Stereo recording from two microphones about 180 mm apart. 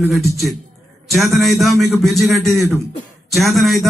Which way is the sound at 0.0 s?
Centre (ahead or behind).